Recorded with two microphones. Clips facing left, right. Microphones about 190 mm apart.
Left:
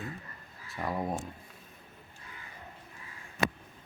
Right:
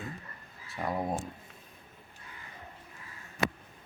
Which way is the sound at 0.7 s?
Centre (ahead or behind).